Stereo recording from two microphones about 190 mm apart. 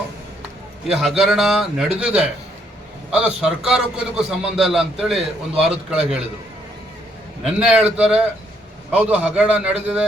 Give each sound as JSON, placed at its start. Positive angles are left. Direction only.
{"t": 0.9, "sound": "a man's voice", "side_deg": 0}
{"t": 7.4, "sound": "a man's voice", "side_deg": -5}